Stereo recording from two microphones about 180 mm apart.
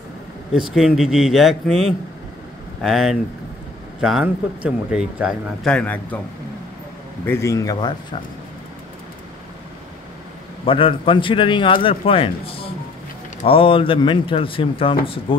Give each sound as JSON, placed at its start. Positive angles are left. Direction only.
{"t": 0.7, "sound": "speech", "side_deg": -5}
{"t": 7.2, "sound": "a man's voice", "side_deg": 15}
{"t": 10.6, "sound": "a man's voice", "side_deg": 30}